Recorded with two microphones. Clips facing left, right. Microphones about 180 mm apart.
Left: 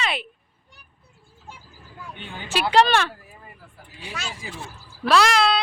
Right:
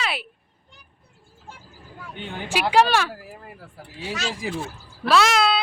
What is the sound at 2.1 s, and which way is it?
Speech, 15° right (ahead or behind).